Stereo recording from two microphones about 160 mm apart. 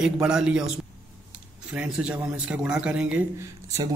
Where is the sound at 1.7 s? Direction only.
5° right (ahead or behind).